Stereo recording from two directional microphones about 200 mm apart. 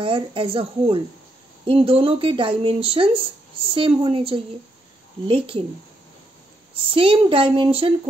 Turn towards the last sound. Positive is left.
turn(degrees=-25)  # may be behind; listen again after turning